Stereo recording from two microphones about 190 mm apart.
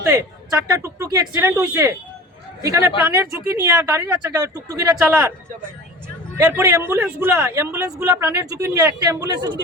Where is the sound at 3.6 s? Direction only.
15° right (ahead or behind).